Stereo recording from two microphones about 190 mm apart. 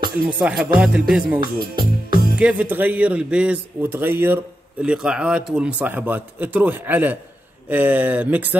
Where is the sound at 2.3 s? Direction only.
5° right (ahead or behind).